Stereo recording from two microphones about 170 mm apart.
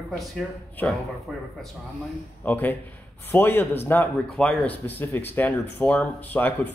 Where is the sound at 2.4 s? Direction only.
10° left (ahead or behind).